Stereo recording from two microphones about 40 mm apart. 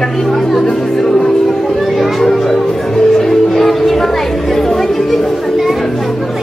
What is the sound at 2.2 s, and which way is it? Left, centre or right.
Music, centre.